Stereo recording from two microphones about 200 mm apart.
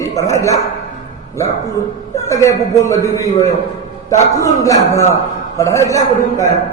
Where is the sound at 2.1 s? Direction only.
15° left (ahead or behind).